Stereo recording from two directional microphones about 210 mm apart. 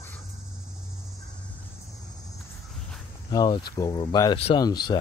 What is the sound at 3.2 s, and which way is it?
Speech, 20° left (ahead or behind).